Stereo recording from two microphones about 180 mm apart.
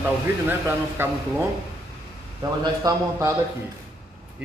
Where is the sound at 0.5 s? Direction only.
10° right (ahead or behind).